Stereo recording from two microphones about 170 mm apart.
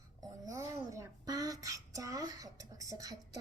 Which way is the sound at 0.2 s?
20° right (ahead or behind).